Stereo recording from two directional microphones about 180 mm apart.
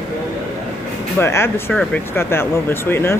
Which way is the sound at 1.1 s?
15° left (ahead or behind).